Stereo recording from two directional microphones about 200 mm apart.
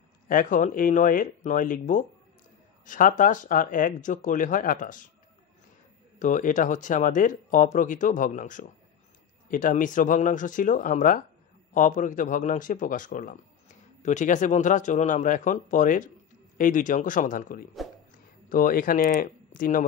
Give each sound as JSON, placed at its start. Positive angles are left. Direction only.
{"t": 0.3, "sound": "speech", "side_deg": 40}
{"t": 6.1, "sound": "speech", "side_deg": 40}